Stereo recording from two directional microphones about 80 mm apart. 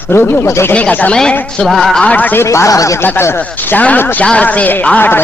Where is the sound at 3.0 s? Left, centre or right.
Left.